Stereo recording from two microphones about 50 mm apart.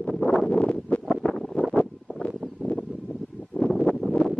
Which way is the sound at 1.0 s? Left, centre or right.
Centre.